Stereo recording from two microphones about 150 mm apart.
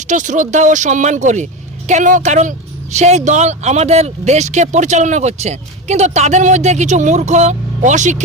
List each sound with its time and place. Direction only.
0.1 s speech: 55° right (ahead or behind)